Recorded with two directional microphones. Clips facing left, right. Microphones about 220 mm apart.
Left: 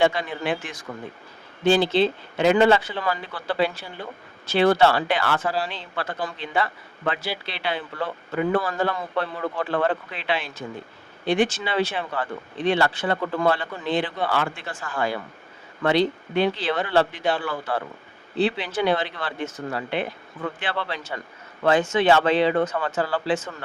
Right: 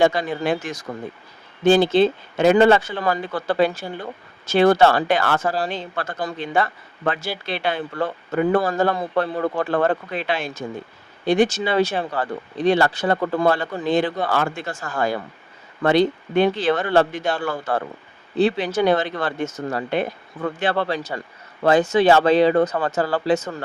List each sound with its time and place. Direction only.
0.0 s speech: 40° right (ahead or behind)